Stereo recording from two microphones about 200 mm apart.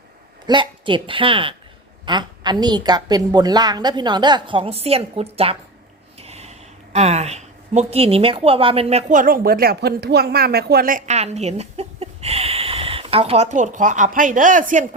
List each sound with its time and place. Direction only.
0.4 s a woman's voice: 25° right (ahead or behind); by 14.8 s 40° right (ahead or behind)